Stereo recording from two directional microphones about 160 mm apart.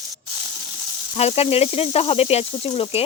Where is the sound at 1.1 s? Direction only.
40° left (ahead or behind).